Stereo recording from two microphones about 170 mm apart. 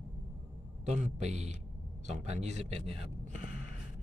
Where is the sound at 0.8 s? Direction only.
40° right (ahead or behind).